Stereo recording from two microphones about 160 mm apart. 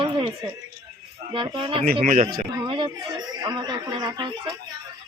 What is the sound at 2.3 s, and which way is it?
A woman's voice, 25° right (ahead or behind).